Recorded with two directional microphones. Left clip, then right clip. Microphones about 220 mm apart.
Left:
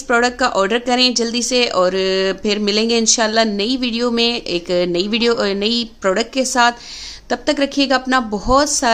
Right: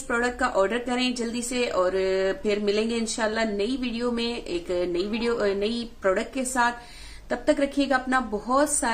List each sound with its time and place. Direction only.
0.1 s a woman's voice: 45° left (ahead or behind)